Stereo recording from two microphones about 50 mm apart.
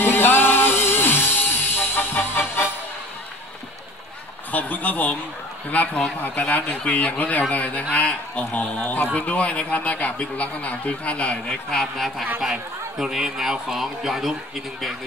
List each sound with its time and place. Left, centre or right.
0.0 s music: left
4.5 s a man's voice: left
11.4 s speech: centre
12.4 s speech: centre